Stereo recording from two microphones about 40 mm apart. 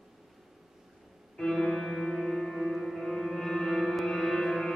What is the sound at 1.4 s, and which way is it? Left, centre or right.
Music, centre.